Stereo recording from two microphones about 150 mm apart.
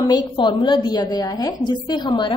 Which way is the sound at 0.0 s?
30° left (ahead or behind).